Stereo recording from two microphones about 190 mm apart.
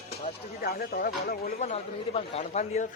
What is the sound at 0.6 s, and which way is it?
Speech, 55° left (ahead or behind).